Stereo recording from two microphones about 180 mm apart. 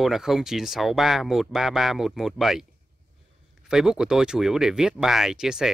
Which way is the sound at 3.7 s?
5° right (ahead or behind).